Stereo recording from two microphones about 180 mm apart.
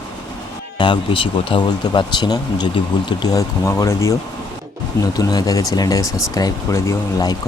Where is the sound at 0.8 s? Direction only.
25° left (ahead or behind).